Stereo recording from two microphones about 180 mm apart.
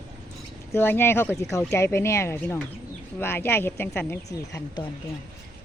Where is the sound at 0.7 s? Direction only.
10° left (ahead or behind).